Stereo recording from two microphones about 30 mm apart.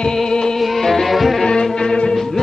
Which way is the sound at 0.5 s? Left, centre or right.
Centre.